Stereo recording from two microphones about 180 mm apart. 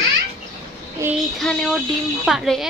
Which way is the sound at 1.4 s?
5° left (ahead or behind).